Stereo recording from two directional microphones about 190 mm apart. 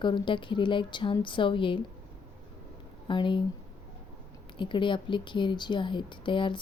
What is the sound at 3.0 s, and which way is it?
Speech, 25° left (ahead or behind).